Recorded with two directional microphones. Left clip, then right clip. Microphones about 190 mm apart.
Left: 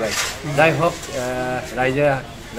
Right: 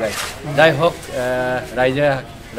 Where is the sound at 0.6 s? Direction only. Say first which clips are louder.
Right 3 dB; 25° right (ahead or behind).